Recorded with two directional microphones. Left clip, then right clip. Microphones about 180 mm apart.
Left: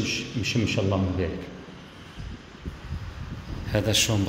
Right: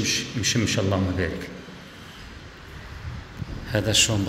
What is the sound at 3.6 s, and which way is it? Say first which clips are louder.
Speech: right 2 dB; 5° left (ahead or behind).